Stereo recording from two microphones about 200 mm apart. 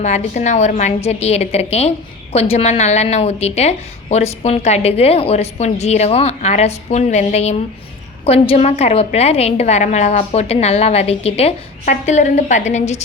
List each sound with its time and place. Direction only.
0.0 s a woman's voice: 35° left (ahead or behind)